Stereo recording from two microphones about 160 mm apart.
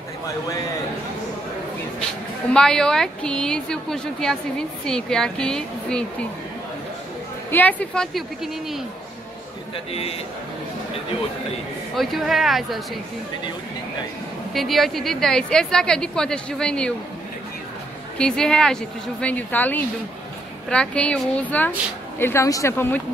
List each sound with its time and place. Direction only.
2.5 s a woman's voice: 5° left (ahead or behind)
7.5 s a woman's voice: 10° left (ahead or behind)
12.0 s a woman's voice: centre (ahead or behind)
14.5 s a woman's voice: centre (ahead or behind)
18.1 s a woman's voice: 5° left (ahead or behind)